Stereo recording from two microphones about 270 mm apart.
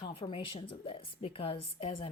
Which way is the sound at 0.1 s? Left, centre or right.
Left.